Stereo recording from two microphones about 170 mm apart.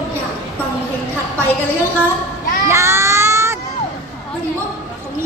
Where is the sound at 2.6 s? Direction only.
15° right (ahead or behind).